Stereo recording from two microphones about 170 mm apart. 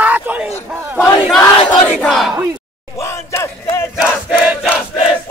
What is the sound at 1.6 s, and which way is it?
Crowd, 5° left (ahead or behind).